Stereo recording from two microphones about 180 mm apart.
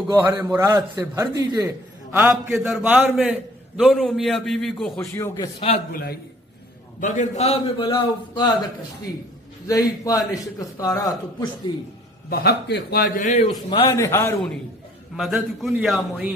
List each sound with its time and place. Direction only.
0.1 s a man's voice: 15° right (ahead or behind); by 5.1 s centre (ahead or behind)
5.1 s a man's voice: 15° left (ahead or behind)
7.0 s a man's voice: 45° left (ahead or behind); by 8.5 s 25° left (ahead or behind)
9.7 s a man's voice: 20° left (ahead or behind)
12.3 s a man's voice: 60° left (ahead or behind); by 13.5 s 40° left (ahead or behind)
13.5 s a man's voice: 25° left (ahead or behind)
15.1 s a man's voice: centre (ahead or behind)